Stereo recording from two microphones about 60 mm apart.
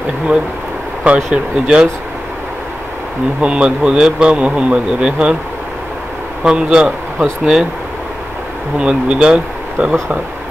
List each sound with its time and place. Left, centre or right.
1.0 s speech: centre
3.3 s speech: centre
6.4 s a man's voice: centre
8.7 s speech: centre